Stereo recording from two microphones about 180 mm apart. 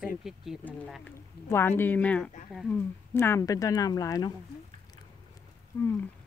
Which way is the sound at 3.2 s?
15° left (ahead or behind).